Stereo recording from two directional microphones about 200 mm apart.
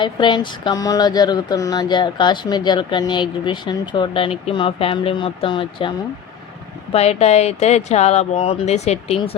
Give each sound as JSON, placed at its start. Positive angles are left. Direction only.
{"t": 0.0, "sound": "speech", "side_deg": 25}
{"t": 6.9, "sound": "speech", "side_deg": 30}